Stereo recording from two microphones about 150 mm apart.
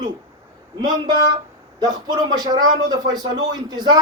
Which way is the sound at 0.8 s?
30° right (ahead or behind).